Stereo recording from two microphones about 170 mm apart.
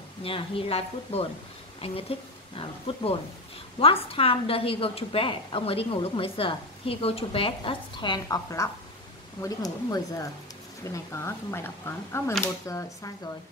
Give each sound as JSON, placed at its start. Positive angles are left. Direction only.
{"t": 0.2, "sound": "a woman's voice", "side_deg": 35}